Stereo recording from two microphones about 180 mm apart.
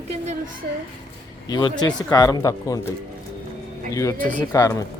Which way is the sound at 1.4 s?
25° left (ahead or behind).